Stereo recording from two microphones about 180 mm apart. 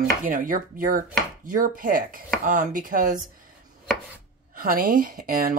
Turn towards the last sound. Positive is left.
turn(degrees=-50)  # may be behind; listen again after turning